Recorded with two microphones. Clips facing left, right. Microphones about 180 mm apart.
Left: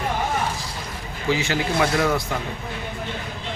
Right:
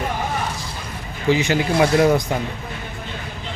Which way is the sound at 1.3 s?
15° right (ahead or behind).